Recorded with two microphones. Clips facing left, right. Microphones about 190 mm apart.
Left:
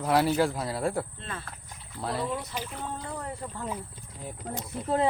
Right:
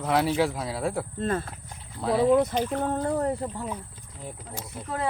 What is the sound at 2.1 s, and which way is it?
Speech, 55° right (ahead or behind).